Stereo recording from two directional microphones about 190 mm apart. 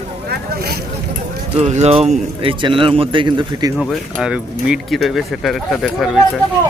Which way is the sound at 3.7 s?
Centre (ahead or behind).